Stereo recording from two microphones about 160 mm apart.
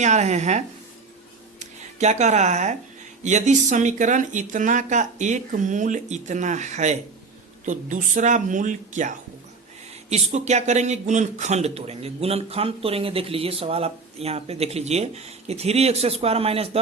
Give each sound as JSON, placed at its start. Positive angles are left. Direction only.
{"t": 0.0, "sound": "speech", "side_deg": -45}